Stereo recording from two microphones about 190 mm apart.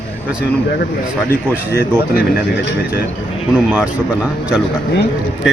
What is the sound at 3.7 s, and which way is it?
Speech, 5° right (ahead or behind).